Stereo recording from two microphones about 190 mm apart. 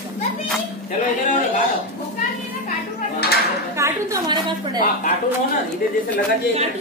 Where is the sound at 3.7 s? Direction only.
15° right (ahead or behind).